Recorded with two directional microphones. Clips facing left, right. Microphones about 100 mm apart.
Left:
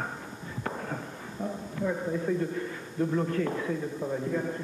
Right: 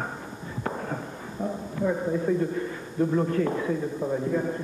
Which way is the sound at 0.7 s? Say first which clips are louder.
Right 3 dB; 25° right (ahead or behind).